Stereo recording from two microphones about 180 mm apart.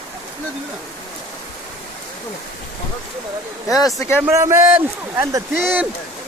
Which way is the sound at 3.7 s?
20° left (ahead or behind).